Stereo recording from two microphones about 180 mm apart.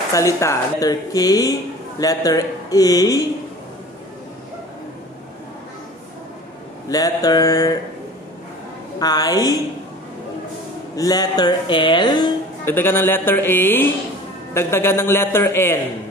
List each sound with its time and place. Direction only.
0.1 s speech: 15° left (ahead or behind)
6.9 s speech: 20° left (ahead or behind)
9.0 s speech: 20° left (ahead or behind)
11.0 s speech: 20° left (ahead or behind)
12.6 s a man's voice: 10° left (ahead or behind)